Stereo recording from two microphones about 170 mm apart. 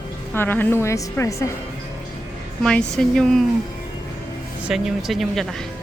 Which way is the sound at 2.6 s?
5° left (ahead or behind).